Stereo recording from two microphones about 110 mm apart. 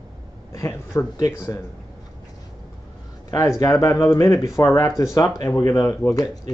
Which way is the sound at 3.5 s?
30° left (ahead or behind).